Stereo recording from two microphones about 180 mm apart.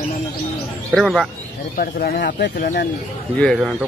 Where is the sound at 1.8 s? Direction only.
55° left (ahead or behind).